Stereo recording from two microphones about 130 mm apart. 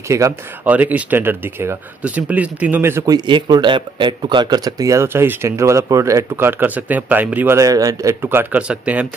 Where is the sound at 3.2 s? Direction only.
35° right (ahead or behind).